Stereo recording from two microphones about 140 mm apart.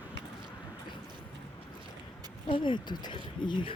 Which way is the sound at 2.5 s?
35° left (ahead or behind).